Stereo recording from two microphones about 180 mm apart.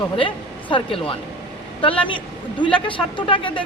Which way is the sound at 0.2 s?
30° left (ahead or behind).